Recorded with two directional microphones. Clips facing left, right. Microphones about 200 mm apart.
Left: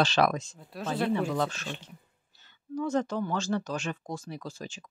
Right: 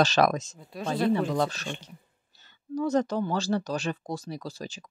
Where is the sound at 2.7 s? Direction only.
40° right (ahead or behind).